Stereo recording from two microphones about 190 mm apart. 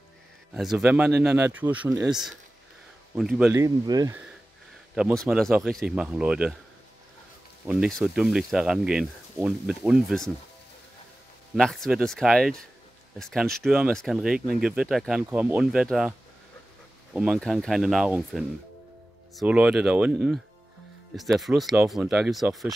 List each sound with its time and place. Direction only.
0.6 s speech: 5° right (ahead or behind)
3.5 s speech: 20° right (ahead or behind)
4.9 s speech: centre (ahead or behind)
7.6 s speech: 5° right (ahead or behind)
11.5 s speech: centre (ahead or behind)